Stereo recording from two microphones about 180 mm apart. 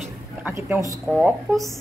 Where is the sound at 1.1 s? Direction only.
5° right (ahead or behind).